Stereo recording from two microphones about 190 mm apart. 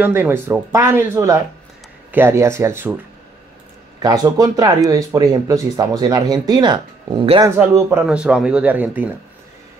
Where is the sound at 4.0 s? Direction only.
20° right (ahead or behind).